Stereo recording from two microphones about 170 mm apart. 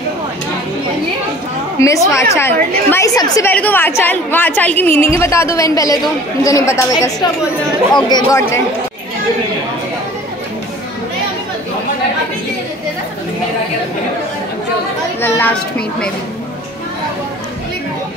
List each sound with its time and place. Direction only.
1.8 s a woman's voice: 20° left (ahead or behind)
15.1 s speech: 10° left (ahead or behind)